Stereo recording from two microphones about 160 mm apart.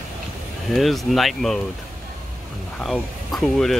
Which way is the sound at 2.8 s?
Centre (ahead or behind).